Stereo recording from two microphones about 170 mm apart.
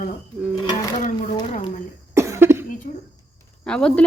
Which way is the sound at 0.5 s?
25° left (ahead or behind).